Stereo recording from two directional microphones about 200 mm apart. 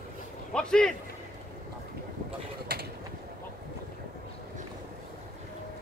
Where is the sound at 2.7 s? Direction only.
50° right (ahead or behind).